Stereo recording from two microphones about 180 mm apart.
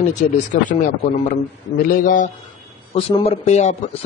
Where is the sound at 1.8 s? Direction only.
50° left (ahead or behind).